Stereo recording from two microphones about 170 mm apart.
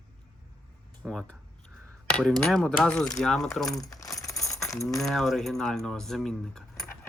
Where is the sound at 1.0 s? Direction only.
5° left (ahead or behind).